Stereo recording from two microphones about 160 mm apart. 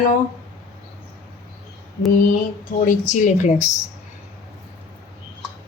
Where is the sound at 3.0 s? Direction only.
50° left (ahead or behind).